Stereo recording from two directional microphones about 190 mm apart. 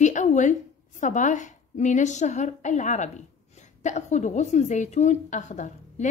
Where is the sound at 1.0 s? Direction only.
40° left (ahead or behind).